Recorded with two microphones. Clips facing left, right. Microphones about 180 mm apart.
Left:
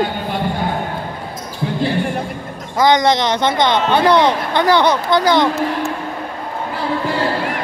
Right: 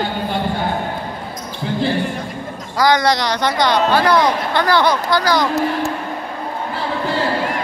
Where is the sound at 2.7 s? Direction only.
20° left (ahead or behind).